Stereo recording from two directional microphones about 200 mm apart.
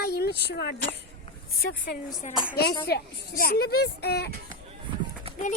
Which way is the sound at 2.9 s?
50° left (ahead or behind).